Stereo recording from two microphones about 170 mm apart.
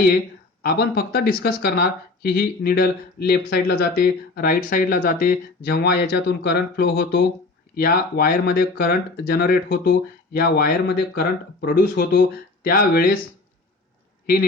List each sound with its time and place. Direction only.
0.6 s speech: 60° left (ahead or behind)